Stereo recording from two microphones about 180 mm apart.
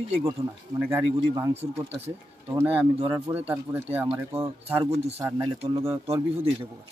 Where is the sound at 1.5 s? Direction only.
35° right (ahead or behind).